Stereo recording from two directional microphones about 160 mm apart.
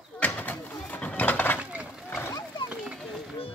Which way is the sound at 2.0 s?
15° left (ahead or behind).